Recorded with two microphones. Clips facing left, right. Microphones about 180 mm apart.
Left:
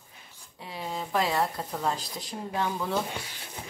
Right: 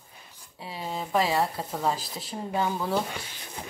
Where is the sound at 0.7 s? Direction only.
Centre (ahead or behind).